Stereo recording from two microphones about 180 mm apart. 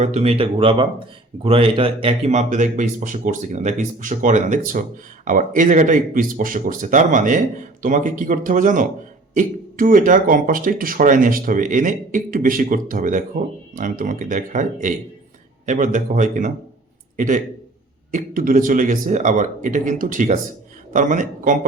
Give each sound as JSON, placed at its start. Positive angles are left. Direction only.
{"t": 0.0, "sound": "speech", "side_deg": -35}